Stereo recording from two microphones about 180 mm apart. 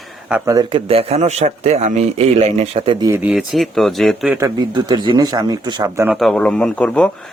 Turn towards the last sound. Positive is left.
turn(degrees=5)  # may be behind; listen again after turning